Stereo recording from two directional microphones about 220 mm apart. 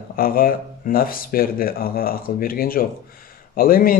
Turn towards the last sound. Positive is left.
turn(degrees=40)  # may be behind; listen again after turning